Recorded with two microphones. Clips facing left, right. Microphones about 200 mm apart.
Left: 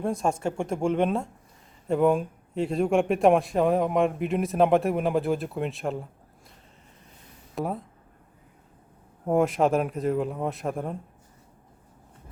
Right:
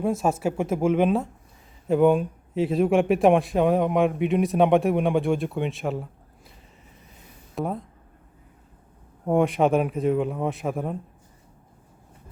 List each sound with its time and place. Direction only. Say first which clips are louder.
0.0 s a man's voice: right 3 dB; 5° right (ahead or behind)
7.5 s speech: right 1 dB; centre (ahead or behind)
9.2 s a man's voice: right 2 dB; centre (ahead or behind)